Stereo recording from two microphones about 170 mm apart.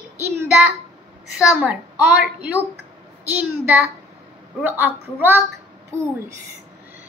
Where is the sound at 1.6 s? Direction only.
10° right (ahead or behind).